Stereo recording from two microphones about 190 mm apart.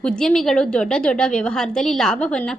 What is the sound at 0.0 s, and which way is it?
A woman's voice, 5° left (ahead or behind).